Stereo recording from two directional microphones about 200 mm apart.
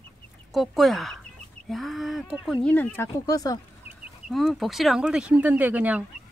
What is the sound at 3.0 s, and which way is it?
Speech, 15° left (ahead or behind).